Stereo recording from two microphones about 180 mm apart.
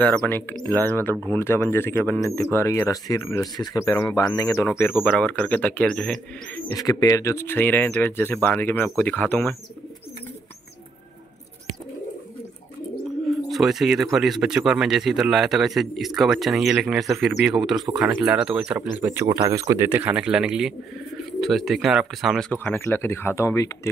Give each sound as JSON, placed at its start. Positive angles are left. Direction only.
{"t": 0.0, "sound": "speech", "side_deg": 10}
{"t": 6.7, "sound": "speech", "side_deg": 20}
{"t": 13.5, "sound": "a man's voice", "side_deg": 0}